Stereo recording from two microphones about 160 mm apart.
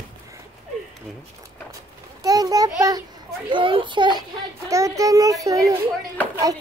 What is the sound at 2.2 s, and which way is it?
A child's voice, 25° right (ahead or behind).